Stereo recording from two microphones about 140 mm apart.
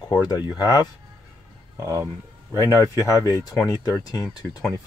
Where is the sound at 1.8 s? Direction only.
20° right (ahead or behind).